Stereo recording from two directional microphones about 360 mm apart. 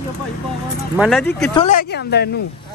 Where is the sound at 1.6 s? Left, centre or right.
Left.